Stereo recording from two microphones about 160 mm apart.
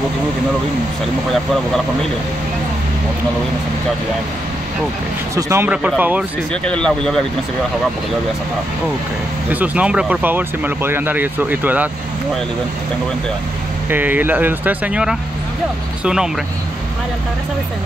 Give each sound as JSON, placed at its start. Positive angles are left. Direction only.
{"t": 1.3, "sound": "speech", "side_deg": 0}
{"t": 5.3, "sound": "speech", "side_deg": -15}
{"t": 6.6, "sound": "speech", "side_deg": 5}
{"t": 9.5, "sound": "speech", "side_deg": -10}
{"t": 13.8, "sound": "speech", "side_deg": -10}